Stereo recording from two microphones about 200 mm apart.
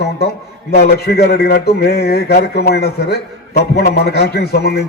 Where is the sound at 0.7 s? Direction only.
55° left (ahead or behind).